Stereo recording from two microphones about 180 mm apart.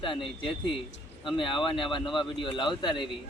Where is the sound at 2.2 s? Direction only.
25° left (ahead or behind).